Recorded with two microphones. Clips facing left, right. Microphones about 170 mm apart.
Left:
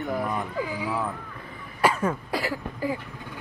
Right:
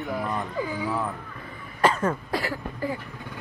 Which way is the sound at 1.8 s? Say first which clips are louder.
Right 1 dB; 10° left (ahead or behind).